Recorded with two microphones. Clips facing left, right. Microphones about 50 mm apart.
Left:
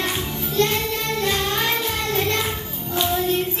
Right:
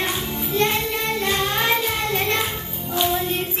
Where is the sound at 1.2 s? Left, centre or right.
Centre.